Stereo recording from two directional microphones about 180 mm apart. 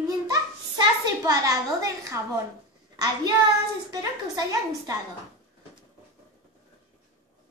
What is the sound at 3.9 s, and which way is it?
A child's voice, 20° right (ahead or behind).